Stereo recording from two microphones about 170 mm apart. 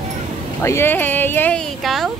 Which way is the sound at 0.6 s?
15° left (ahead or behind).